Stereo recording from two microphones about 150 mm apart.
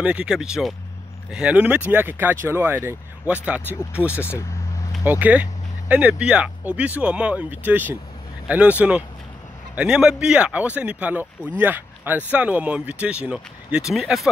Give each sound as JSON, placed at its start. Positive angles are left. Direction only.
{"t": 0.0, "sound": "speech", "side_deg": -5}
{"t": 4.1, "sound": "speech", "side_deg": 15}
{"t": 5.2, "sound": "speech", "side_deg": -10}